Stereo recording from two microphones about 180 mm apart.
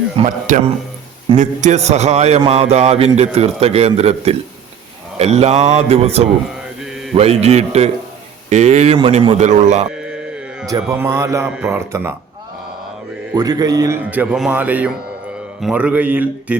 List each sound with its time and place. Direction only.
0.2 s a man's voice: 45° right (ahead or behind)
9.9 s a sound: 5° right (ahead or behind)
10.7 s a man's voice: 20° right (ahead or behind)
13.3 s a man's voice: 20° right (ahead or behind)